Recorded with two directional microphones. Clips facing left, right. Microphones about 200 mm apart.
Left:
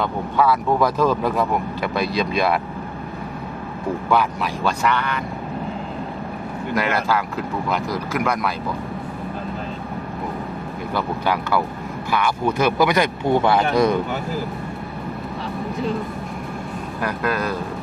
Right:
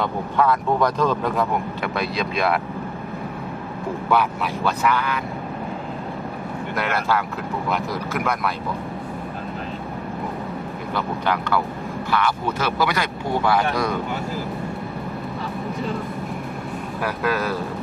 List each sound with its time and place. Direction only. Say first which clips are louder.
0.0 s speech: left 1 dB; 5° left (ahead or behind)
4.1 s speech: even; centre (ahead or behind)
6.7 s speech: left 2 dB; centre (ahead or behind)
11.0 s speech: left 1 dB; 10° left (ahead or behind); by 13.9 s 25° left (ahead or behind)
17.0 s speech: even; centre (ahead or behind)